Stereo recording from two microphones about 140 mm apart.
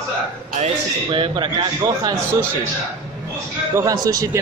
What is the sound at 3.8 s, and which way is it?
Speech, 25° right (ahead or behind).